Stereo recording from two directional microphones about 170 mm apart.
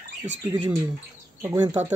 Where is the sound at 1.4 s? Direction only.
15° right (ahead or behind).